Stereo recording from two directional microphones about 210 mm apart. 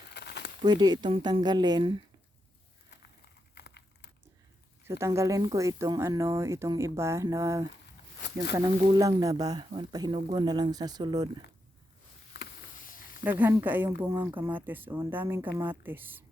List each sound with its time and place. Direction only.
0.1 s crumpling: 55° left (ahead or behind)
0.6 s speech: 20° right (ahead or behind)
3.5 s a sound: 55° left (ahead or behind)
4.9 s speech: 15° right (ahead or behind)
12.3 s a sound: 45° left (ahead or behind)
13.4 s speech: 10° right (ahead or behind)